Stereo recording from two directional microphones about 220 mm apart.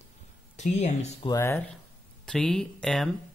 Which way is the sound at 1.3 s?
10° left (ahead or behind).